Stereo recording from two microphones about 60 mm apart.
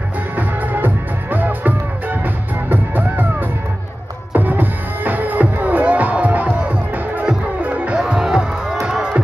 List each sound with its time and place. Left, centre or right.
0.4 s music: right
8.1 s music: centre